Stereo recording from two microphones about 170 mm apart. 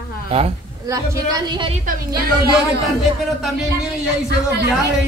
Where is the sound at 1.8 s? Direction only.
55° right (ahead or behind).